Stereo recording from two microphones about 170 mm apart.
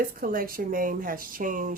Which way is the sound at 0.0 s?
60° right (ahead or behind).